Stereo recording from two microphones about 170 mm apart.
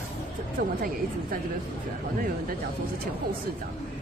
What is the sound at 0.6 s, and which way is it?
Speech, 60° right (ahead or behind).